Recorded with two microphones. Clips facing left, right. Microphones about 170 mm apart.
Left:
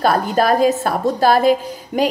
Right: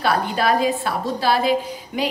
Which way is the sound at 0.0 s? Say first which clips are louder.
Left 4 dB; 45° left (ahead or behind).